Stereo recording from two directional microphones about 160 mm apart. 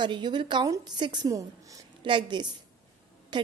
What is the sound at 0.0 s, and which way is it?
A woman's voice, 30° right (ahead or behind).